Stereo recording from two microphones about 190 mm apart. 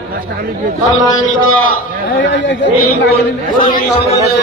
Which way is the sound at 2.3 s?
65° left (ahead or behind).